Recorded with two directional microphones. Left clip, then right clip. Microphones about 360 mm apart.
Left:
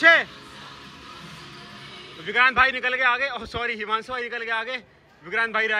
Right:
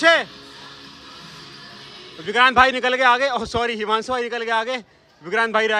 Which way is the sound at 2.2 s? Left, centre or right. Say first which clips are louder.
Right 4 dB; centre.